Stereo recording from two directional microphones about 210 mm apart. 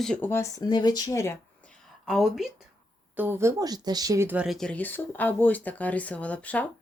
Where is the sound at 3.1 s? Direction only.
10° right (ahead or behind).